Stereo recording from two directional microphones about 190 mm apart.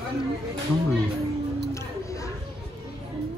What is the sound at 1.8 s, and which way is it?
Music, 15° left (ahead or behind).